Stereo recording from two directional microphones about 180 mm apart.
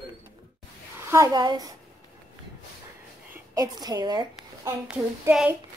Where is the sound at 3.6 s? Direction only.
20° right (ahead or behind).